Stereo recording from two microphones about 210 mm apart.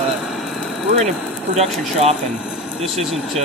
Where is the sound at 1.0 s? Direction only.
30° right (ahead or behind).